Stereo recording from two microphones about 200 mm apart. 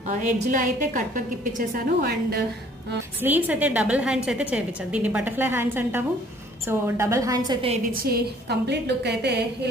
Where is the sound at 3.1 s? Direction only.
10° right (ahead or behind); by 7.8 s 25° right (ahead or behind).